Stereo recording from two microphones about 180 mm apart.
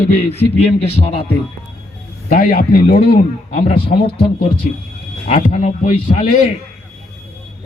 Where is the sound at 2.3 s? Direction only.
50° left (ahead or behind).